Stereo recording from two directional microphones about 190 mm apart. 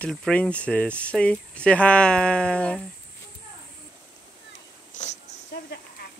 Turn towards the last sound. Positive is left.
turn(degrees=40)  # may be behind; listen again after turning